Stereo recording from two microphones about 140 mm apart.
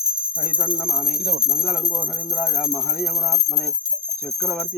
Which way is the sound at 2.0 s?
5° left (ahead or behind).